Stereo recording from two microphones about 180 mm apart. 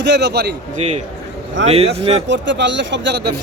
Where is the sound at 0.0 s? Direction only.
70° right (ahead or behind).